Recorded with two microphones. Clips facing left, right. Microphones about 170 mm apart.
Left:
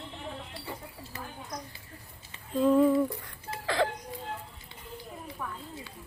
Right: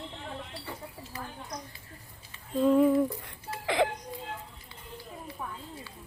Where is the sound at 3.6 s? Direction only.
20° right (ahead or behind).